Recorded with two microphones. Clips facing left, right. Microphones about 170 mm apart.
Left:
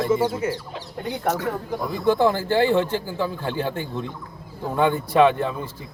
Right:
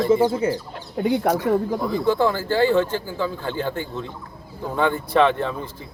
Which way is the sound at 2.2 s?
15° left (ahead or behind).